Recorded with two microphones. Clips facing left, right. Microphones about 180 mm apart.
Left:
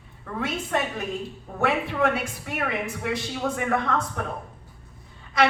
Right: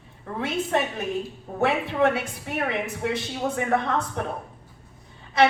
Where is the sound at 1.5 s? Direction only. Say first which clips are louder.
Right 1 dB; 25° right (ahead or behind).